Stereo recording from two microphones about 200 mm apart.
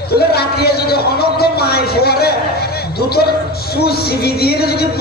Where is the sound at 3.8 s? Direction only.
50° left (ahead or behind).